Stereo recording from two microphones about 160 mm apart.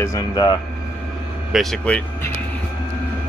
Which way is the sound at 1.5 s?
Centre (ahead or behind).